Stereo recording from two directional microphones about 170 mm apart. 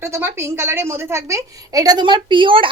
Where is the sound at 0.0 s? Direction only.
15° right (ahead or behind).